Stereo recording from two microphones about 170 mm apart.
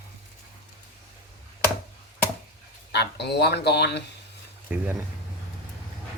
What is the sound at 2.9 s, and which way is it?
Speech, 80° left.